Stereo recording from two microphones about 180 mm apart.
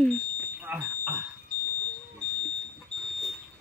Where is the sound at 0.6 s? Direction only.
10° right (ahead or behind).